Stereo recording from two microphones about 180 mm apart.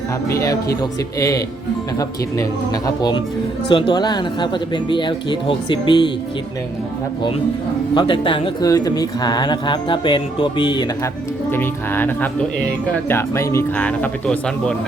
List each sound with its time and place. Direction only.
0.3 s speech: 15° left (ahead or behind)
7.9 s speech: 25° left (ahead or behind)
11.5 s speech: 10° left (ahead or behind)